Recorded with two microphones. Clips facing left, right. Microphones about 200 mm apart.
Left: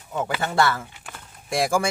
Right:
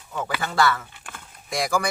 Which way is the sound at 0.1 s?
25° left (ahead or behind).